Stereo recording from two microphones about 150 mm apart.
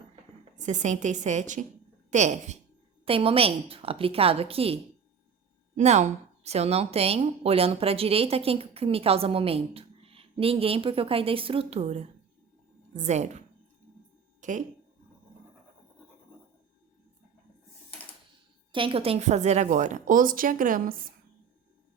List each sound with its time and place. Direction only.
0.5 s a woman's voice: 55° right (ahead or behind)
3.1 s a woman's voice: 40° right (ahead or behind)
5.7 s a woman's voice: 50° right (ahead or behind)
14.4 s speech: 55° right (ahead or behind)
18.7 s a woman's voice: 35° right (ahead or behind); by 21.1 s 70° right (ahead or behind)